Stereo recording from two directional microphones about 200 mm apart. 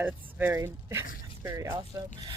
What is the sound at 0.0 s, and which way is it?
Speech, 10° right (ahead or behind).